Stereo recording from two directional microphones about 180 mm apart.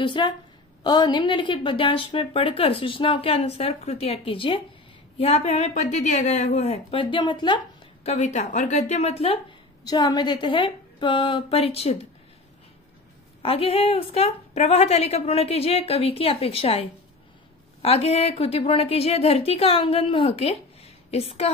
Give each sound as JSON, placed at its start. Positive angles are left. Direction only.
{"t": 0.0, "sound": "a woman's voice", "side_deg": 25}
{"t": 8.1, "sound": "a woman's voice", "side_deg": 40}
{"t": 9.8, "sound": "a woman's voice", "side_deg": 25}
{"t": 13.4, "sound": "a woman's voice", "side_deg": 35}